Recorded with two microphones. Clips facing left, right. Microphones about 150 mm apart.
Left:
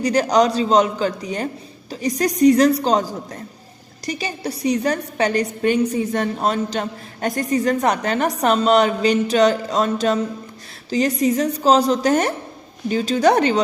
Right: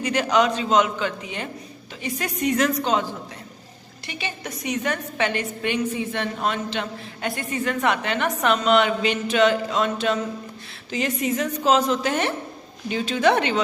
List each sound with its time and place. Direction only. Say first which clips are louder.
0.0 s a woman's voice: left 4 dB; 35° left (ahead or behind)